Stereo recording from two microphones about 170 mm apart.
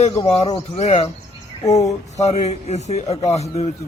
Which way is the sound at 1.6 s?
20° left (ahead or behind).